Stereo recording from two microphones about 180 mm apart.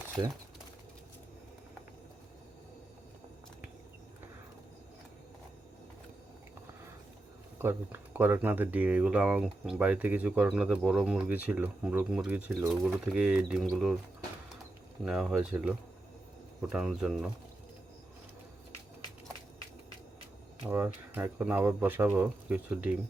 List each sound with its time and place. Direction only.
7.6 s speech: 10° right (ahead or behind)
15.0 s speech: 5° right (ahead or behind)
20.7 s speech: 10° right (ahead or behind)